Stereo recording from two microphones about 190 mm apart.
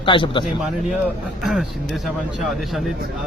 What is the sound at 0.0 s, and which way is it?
Speech, 25° left (ahead or behind).